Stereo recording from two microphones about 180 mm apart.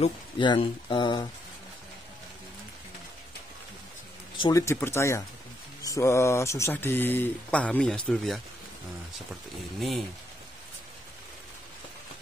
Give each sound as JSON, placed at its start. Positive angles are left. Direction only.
{"t": 0.0, "sound": "speech", "side_deg": 30}
{"t": 4.4, "sound": "speech", "side_deg": 20}
{"t": 9.3, "sound": "speech", "side_deg": 0}